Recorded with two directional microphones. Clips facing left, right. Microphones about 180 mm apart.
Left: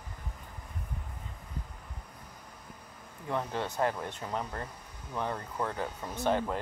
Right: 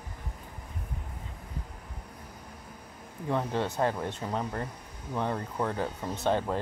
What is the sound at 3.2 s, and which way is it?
Speech, 15° right (ahead or behind).